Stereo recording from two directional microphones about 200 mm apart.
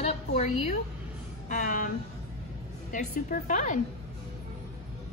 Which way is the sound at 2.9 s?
40° left (ahead or behind).